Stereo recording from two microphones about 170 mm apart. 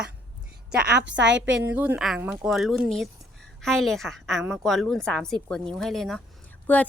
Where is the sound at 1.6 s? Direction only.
10° right (ahead or behind); by 6.8 s 10° left (ahead or behind).